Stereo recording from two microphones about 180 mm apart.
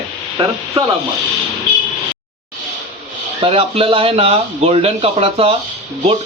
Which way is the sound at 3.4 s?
30° right (ahead or behind).